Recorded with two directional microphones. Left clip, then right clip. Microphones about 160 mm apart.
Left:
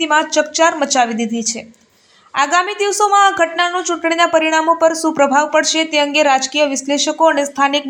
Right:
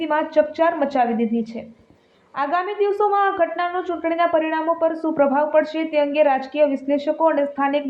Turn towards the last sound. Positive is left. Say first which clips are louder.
# left 5 dB
turn(degrees=25)  # may be behind; listen again after turning